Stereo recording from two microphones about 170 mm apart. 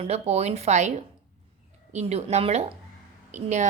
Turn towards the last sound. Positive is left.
turn(degrees=-45)  # may be behind; listen again after turning